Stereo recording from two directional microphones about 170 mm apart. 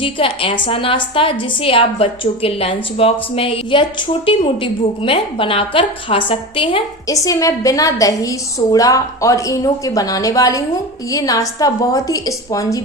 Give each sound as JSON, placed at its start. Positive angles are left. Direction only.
{"t": 0.0, "sound": "a woman's voice", "side_deg": 30}
{"t": 7.1, "sound": "a woman's voice", "side_deg": 20}